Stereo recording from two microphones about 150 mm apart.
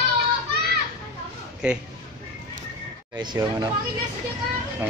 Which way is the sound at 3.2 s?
30° right (ahead or behind).